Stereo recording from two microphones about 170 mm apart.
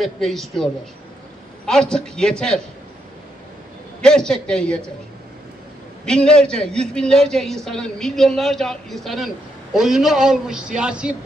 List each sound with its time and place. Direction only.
0.0 s a man's voice: centre (ahead or behind)
1.7 s a man's voice: 5° left (ahead or behind)
4.0 s a man's voice: 5° left (ahead or behind)
6.0 s a man's voice: 5° left (ahead or behind)